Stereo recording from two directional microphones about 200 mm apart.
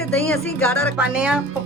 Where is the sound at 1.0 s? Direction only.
5° right (ahead or behind).